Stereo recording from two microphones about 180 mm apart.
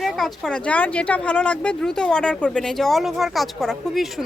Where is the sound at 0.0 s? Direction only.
Centre (ahead or behind).